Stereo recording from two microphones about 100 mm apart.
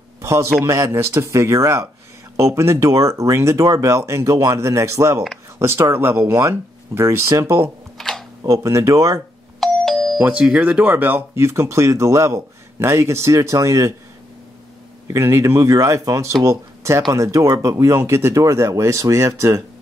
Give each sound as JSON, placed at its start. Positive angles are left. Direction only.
{"t": 0.2, "sound": "a sound", "side_deg": -30}
{"t": 0.7, "sound": "speech", "side_deg": -30}
{"t": 8.0, "sound": "camera", "side_deg": 5}
{"t": 8.5, "sound": "speech", "side_deg": -30}
{"t": 9.6, "sound": "doorbell", "side_deg": 5}
{"t": 10.1, "sound": "speech", "side_deg": -15}
{"t": 15.0, "sound": "speech", "side_deg": -25}